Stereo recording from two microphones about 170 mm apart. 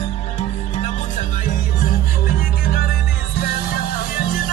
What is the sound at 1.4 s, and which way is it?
Music, 50° left (ahead or behind).